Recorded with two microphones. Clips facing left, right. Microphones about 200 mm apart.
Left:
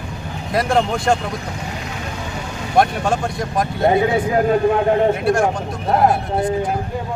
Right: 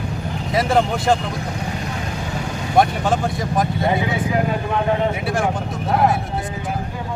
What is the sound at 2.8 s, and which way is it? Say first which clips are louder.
Speech: even; centre (ahead or behind).